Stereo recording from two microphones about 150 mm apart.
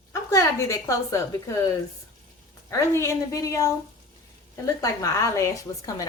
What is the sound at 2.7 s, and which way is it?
A woman's voice, 20° left (ahead or behind).